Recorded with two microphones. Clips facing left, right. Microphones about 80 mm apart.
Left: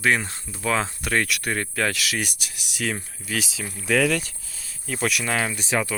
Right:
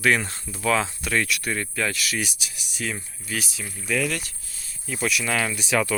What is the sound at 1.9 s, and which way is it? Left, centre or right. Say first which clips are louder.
Speech: left 1 dB; left.